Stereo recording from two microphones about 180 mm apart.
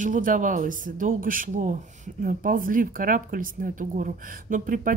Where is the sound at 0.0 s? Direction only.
45° right (ahead or behind).